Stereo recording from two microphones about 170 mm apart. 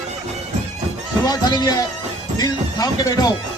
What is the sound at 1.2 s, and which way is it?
Speech, 25° left (ahead or behind).